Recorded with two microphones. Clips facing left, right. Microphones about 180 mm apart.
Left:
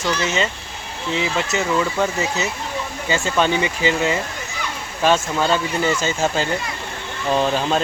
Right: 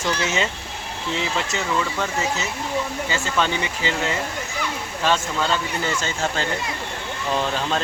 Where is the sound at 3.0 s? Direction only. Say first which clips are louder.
Left 9 dB; 20° left (ahead or behind).